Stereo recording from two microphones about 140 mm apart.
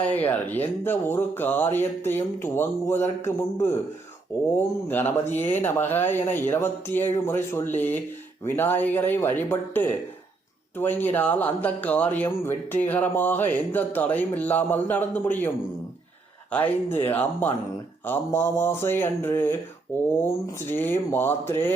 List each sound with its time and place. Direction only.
0.0 s speech: 10° left (ahead or behind)
16.5 s speech: 15° left (ahead or behind)